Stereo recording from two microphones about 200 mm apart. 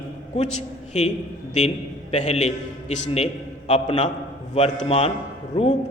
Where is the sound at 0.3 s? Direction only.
35° left (ahead or behind).